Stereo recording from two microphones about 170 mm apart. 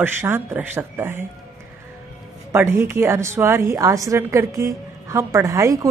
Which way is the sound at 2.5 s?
15° right (ahead or behind).